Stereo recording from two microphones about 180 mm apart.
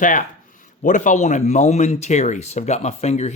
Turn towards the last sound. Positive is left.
turn(degrees=40)  # may be behind; listen again after turning